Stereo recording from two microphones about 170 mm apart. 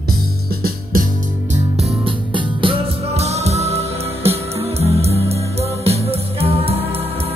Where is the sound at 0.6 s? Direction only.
55° right (ahead or behind).